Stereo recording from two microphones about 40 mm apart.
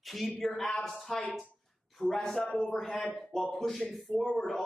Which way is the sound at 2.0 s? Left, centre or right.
Centre.